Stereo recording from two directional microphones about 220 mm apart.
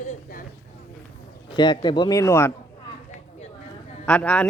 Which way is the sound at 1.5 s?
20° left (ahead or behind).